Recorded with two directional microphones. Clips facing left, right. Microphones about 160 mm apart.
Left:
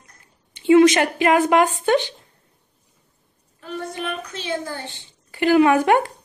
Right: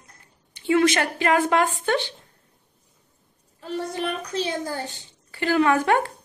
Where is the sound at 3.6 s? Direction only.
35° right (ahead or behind).